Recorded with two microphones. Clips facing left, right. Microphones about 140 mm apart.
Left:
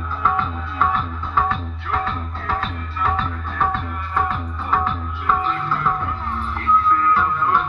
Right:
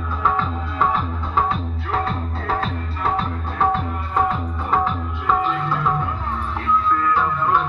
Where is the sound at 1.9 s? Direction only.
35° right (ahead or behind).